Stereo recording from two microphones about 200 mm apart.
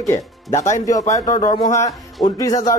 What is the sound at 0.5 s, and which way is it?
Speech, 35° left (ahead or behind).